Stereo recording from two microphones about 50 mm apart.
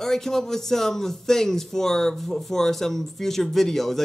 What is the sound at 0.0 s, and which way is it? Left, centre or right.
Speech, centre.